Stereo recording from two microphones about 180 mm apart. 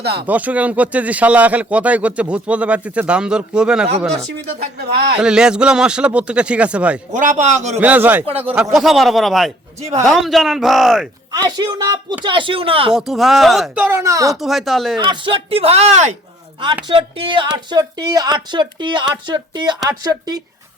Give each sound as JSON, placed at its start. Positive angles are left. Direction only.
{"t": 0.0, "sound": "speech", "side_deg": -65}
{"t": 0.3, "sound": "speech", "side_deg": -10}
{"t": 5.1, "sound": "a man's voice", "side_deg": -5}
{"t": 7.1, "sound": "speech", "side_deg": -45}
{"t": 7.8, "sound": "a man's voice", "side_deg": -10}
{"t": 11.3, "sound": "speech", "side_deg": -25}
{"t": 12.9, "sound": "a man's voice", "side_deg": 0}
{"t": 13.8, "sound": "speech", "side_deg": -15}
{"t": 14.3, "sound": "a man's voice", "side_deg": 0}
{"t": 14.9, "sound": "speech", "side_deg": -25}